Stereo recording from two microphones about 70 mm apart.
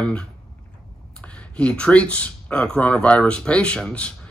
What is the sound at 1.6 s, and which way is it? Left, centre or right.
Speech, centre.